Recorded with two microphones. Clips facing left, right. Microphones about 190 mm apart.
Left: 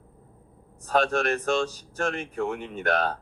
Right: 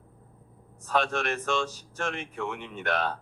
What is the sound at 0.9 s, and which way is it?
Speech, 40° left (ahead or behind).